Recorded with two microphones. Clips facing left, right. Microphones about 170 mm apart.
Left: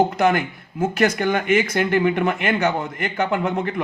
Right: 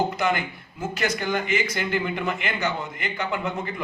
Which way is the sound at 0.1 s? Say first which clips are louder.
Left 6 dB; 50° left (ahead or behind).